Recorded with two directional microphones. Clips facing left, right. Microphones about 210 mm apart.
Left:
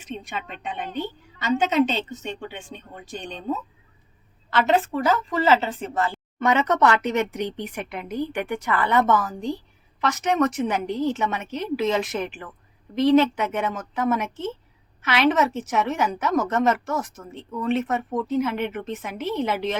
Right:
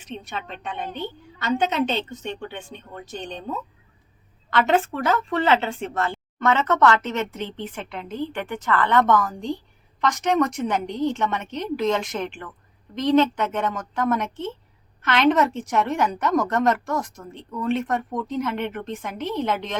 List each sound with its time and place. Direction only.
0.9 s speech: 10° left (ahead or behind)
4.5 s a woman's voice: centre (ahead or behind)